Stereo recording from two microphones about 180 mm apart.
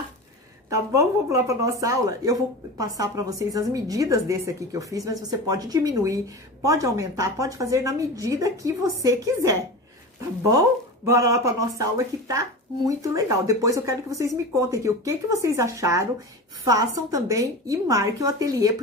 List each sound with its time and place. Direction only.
0.7 s speech: 15° right (ahead or behind)
11.1 s speech: 15° right (ahead or behind)